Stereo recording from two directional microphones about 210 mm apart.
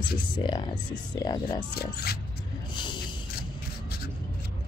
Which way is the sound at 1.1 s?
20° left (ahead or behind).